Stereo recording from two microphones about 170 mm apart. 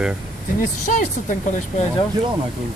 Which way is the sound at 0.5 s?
50° left (ahead or behind).